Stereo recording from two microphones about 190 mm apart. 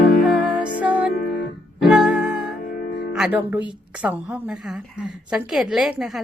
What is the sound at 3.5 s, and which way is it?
A woman's voice, 5° right (ahead or behind).